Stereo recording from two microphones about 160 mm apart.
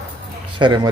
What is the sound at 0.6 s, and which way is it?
Speech, 30° right (ahead or behind).